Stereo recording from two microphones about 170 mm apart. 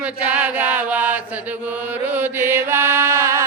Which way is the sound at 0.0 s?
10° right (ahead or behind).